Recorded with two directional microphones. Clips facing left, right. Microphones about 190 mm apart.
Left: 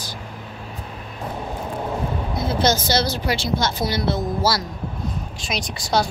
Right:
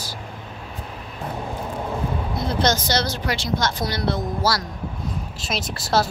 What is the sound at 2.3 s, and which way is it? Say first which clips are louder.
A woman's voice: left 2 dB; 5° left (ahead or behind).